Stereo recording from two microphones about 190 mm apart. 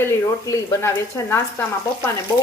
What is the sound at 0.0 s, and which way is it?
Speech, 15° left (ahead or behind).